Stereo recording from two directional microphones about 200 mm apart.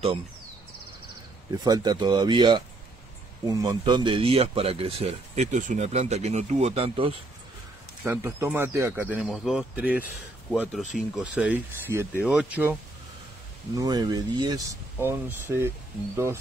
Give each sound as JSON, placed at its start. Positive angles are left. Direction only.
{"t": 1.5, "sound": "speech", "side_deg": -20}
{"t": 8.1, "sound": "speech", "side_deg": -10}
{"t": 13.7, "sound": "speech", "side_deg": -20}